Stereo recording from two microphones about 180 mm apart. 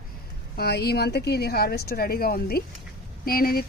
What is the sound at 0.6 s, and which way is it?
Speech, 65° left (ahead or behind).